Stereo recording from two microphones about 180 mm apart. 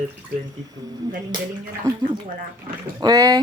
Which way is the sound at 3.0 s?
20° right (ahead or behind).